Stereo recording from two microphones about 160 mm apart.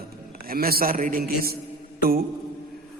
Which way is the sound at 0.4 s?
70° right (ahead or behind).